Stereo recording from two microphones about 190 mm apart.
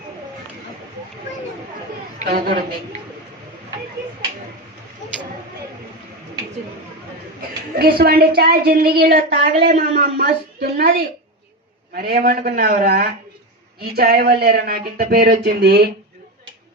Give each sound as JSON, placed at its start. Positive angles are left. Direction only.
{"t": 2.2, "sound": "speech", "side_deg": -55}
{"t": 7.8, "sound": "a woman's voice", "side_deg": -55}
{"t": 11.9, "sound": "speech", "side_deg": -50}